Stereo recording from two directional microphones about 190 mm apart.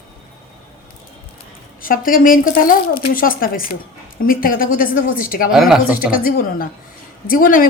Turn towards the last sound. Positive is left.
turn(degrees=45)  # may be behind; listen again after turning